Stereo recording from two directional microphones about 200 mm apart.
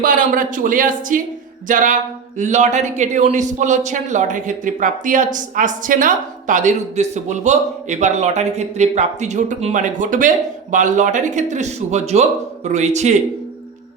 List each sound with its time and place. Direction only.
0.0 s speech: 45° right (ahead or behind)